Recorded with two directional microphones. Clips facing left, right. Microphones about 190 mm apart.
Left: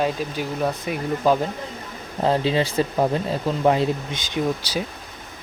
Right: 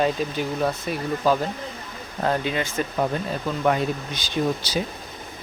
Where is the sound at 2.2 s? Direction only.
30° left (ahead or behind).